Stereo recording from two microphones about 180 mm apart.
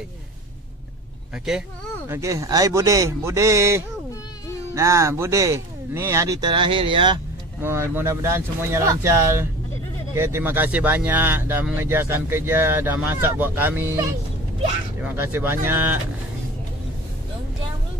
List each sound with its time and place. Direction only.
2.0 s speech: 15° right (ahead or behind)
7.6 s speech: 15° right (ahead or behind)